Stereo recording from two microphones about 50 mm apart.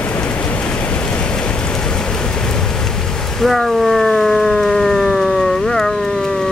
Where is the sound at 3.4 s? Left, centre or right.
Centre.